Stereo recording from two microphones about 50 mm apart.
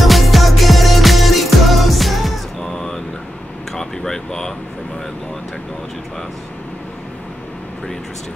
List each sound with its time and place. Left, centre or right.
0.0 s music: centre
2.7 s vehicle: centre
3.7 s a sound: centre